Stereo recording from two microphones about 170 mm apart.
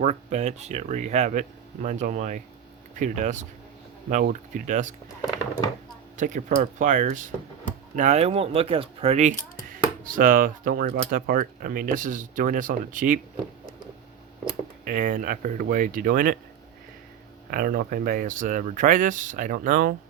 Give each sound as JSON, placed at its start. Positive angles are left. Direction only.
{"t": 0.0, "sound": "speech", "side_deg": -45}
{"t": 6.1, "sound": "speech", "side_deg": -45}
{"t": 14.8, "sound": "speech", "side_deg": -55}
{"t": 17.5, "sound": "speech", "side_deg": -60}